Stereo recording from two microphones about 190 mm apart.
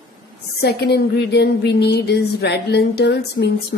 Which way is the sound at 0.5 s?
60° left (ahead or behind).